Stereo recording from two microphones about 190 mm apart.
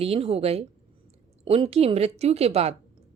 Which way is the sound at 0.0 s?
30° right (ahead or behind).